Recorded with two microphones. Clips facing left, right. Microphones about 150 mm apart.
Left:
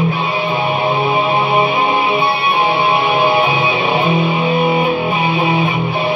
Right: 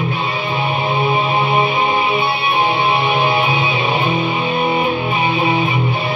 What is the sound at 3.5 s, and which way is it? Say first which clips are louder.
Music: left 2 dB; centre (ahead or behind).